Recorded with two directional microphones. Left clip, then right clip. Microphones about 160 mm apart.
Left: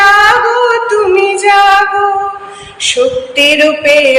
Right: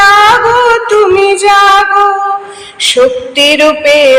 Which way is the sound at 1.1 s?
30° right (ahead or behind).